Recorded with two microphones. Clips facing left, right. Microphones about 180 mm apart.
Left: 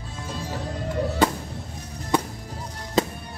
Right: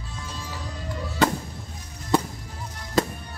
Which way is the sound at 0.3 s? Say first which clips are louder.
Left 7 dB; 50° left (ahead or behind).